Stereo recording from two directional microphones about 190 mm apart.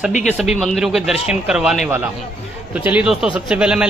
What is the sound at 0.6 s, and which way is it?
A man's voice, centre (ahead or behind).